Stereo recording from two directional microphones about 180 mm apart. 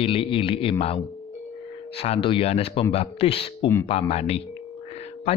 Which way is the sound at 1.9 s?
35° left (ahead or behind).